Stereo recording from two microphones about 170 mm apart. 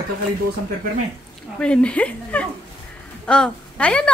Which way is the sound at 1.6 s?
5° left (ahead or behind).